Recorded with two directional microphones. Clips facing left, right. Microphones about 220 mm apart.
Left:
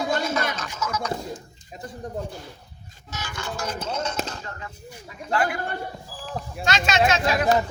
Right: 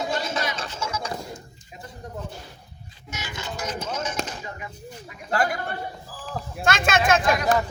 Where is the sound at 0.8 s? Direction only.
30° right (ahead or behind).